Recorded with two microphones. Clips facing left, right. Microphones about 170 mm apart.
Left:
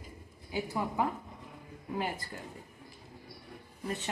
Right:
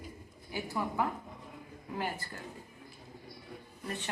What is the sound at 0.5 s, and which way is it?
A woman's voice, 20° left (ahead or behind).